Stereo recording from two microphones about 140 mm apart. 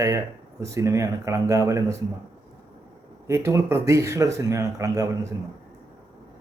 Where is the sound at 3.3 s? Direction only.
20° right (ahead or behind).